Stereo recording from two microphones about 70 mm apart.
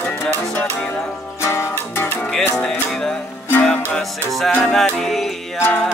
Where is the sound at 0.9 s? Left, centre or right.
Left.